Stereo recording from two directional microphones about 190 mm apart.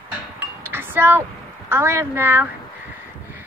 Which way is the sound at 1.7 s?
10° right (ahead or behind).